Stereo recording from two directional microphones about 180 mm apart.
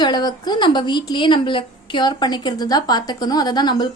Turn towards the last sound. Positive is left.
turn(degrees=25)  # may be behind; listen again after turning